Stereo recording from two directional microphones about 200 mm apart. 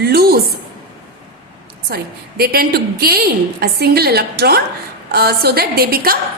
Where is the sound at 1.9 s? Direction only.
50° right (ahead or behind).